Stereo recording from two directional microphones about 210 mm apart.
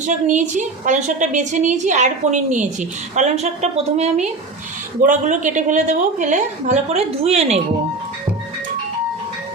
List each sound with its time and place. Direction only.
0.0 s a woman's voice: 35° right (ahead or behind)